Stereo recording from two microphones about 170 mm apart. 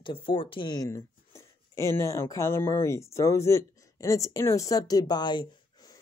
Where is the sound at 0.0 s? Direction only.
30° left (ahead or behind).